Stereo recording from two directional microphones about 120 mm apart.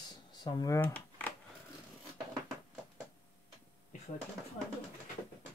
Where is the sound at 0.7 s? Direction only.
15° left (ahead or behind).